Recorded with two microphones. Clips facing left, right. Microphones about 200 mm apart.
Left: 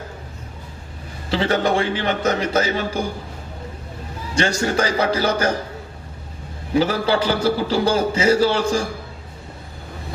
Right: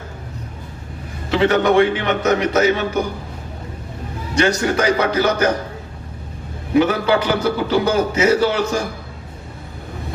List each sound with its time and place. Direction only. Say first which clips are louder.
1.3 s a man's voice: right 4 dB; 30° left (ahead or behind)
4.4 s a man's voice: right 3 dB; 30° left (ahead or behind)
6.7 s a man's voice: right 3 dB; 30° left (ahead or behind)